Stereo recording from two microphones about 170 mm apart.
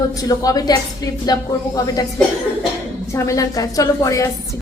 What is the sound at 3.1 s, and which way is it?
A woman's voice, 20° left (ahead or behind).